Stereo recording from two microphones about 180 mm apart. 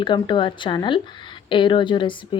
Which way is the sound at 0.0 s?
25° left (ahead or behind).